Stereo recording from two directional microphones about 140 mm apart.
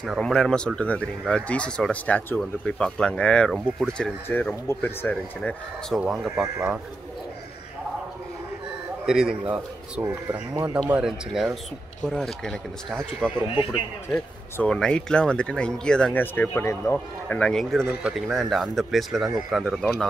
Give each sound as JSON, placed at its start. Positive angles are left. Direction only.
{"t": 0.0, "sound": "speech", "side_deg": 5}
{"t": 5.9, "sound": "speech", "side_deg": -5}
{"t": 9.0, "sound": "speech", "side_deg": -5}
{"t": 10.9, "sound": "speech", "side_deg": -5}
{"t": 13.5, "sound": "speech", "side_deg": 35}
{"t": 14.1, "sound": "speech", "side_deg": 5}